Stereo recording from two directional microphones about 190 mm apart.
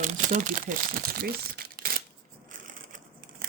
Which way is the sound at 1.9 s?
50° right (ahead or behind).